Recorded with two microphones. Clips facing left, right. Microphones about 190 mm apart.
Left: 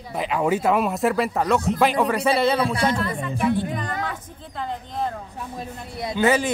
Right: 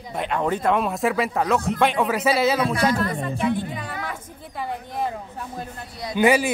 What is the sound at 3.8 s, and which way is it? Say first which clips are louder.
A man's voice: left 3 dB; 10° right (ahead or behind).